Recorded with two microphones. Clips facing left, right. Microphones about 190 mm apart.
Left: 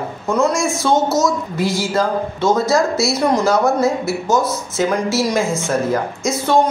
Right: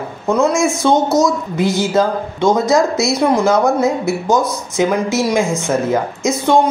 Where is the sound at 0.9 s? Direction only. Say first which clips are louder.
Right 1 dB; 5° left (ahead or behind).